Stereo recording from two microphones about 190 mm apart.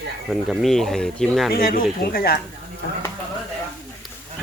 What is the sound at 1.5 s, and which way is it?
Speech, 50° left (ahead or behind).